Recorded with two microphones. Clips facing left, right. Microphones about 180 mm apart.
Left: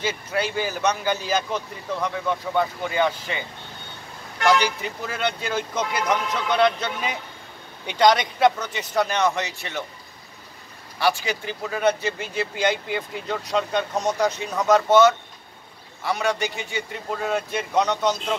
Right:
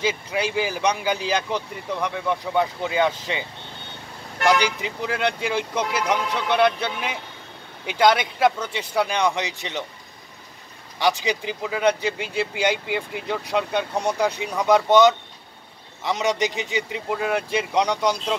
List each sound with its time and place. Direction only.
0.0 s speech: 10° right (ahead or behind)
4.5 s speech: 15° right (ahead or behind)
11.0 s speech: 15° right (ahead or behind)